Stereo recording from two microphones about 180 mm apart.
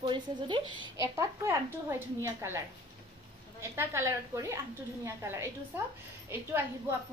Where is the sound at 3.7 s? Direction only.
15° right (ahead or behind).